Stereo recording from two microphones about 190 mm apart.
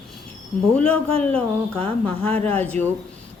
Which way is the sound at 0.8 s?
5° left (ahead or behind).